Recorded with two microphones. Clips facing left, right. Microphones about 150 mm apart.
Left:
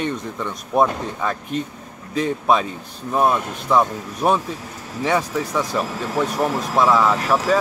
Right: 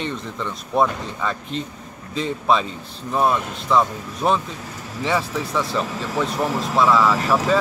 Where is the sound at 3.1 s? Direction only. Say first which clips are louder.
Left 1 dB; 10° left (ahead or behind).